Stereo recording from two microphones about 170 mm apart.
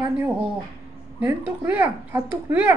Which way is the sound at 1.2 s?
10° right (ahead or behind).